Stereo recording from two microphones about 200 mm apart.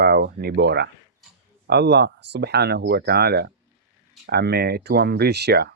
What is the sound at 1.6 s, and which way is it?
Speech, 60° right (ahead or behind).